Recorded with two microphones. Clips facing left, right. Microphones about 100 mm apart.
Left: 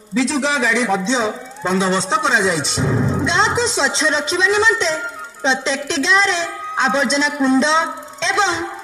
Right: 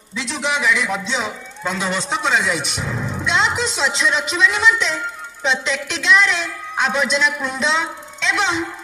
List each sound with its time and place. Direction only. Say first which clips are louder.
0.2 s a man's voice: left 4 dB; 35° left (ahead or behind)